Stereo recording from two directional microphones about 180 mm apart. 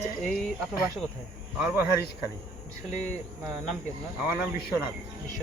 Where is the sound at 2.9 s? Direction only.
40° left (ahead or behind).